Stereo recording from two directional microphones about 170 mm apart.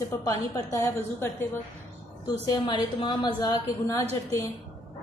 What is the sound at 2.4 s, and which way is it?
A woman's voice, 30° left (ahead or behind).